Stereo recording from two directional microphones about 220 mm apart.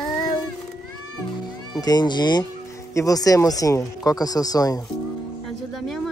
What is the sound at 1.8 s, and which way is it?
Speech, 20° left (ahead or behind).